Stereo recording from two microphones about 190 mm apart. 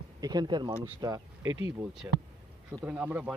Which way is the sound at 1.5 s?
90° right.